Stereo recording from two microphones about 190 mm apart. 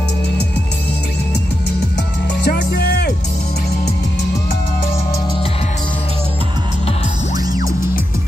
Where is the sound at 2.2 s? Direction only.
60° left (ahead or behind).